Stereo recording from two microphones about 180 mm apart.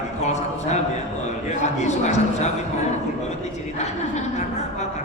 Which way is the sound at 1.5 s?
40° left (ahead or behind).